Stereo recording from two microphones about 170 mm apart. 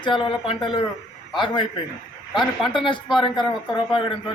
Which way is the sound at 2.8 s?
30° left (ahead or behind).